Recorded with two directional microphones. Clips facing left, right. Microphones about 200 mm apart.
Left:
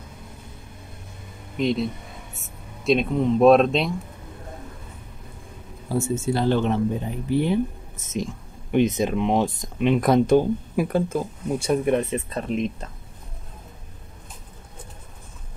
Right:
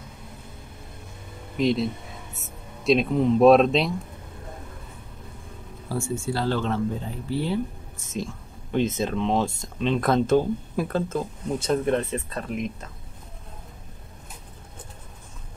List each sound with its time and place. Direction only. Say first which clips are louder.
1.6 s speech: even; centre (ahead or behind)
5.9 s speech: left 4 dB; 20° left (ahead or behind)